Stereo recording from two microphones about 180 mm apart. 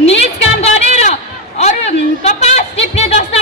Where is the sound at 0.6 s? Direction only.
35° left (ahead or behind).